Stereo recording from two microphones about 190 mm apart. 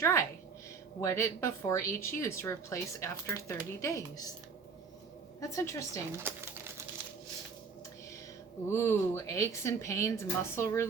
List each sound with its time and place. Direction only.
0.0 s speech: 15° left (ahead or behind)
5.4 s speech: 15° left (ahead or behind)
6.3 s speech: 10° right (ahead or behind)
8.7 s speech: 15° left (ahead or behind)